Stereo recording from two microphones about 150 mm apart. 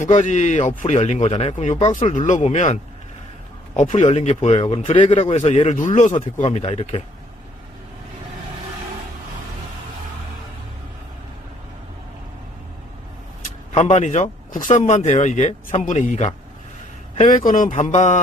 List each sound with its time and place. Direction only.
0.0 s speech: 55° left (ahead or behind)
13.7 s speech: 50° left (ahead or behind)
17.5 s speech: 60° left (ahead or behind)